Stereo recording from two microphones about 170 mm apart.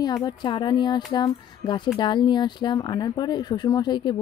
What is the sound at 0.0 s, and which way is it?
Speech, 25° left (ahead or behind).